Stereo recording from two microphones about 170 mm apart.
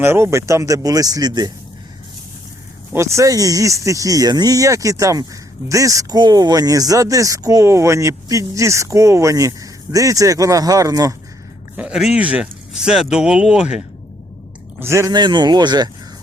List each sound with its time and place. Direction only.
0.0 s speech: 15° right (ahead or behind)
2.9 s speech: 15° right (ahead or behind)
11.8 s speech: 5° right (ahead or behind)
14.8 s speech: 15° right (ahead or behind)